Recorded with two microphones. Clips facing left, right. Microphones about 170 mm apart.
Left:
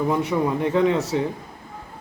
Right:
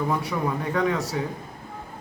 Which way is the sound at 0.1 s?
25° left (ahead or behind).